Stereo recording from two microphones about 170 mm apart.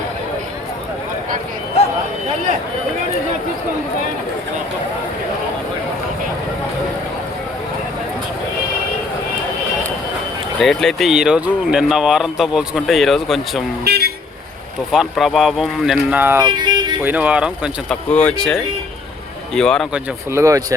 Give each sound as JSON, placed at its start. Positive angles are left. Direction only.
{"t": 10.6, "sound": "speech", "side_deg": 0}
{"t": 13.8, "sound": "toot", "side_deg": -70}
{"t": 14.9, "sound": "speech", "side_deg": 0}
{"t": 16.4, "sound": "speech", "side_deg": -25}
{"t": 17.0, "sound": "speech", "side_deg": -10}
{"t": 18.1, "sound": "speech", "side_deg": 5}
{"t": 19.9, "sound": "speech", "side_deg": -15}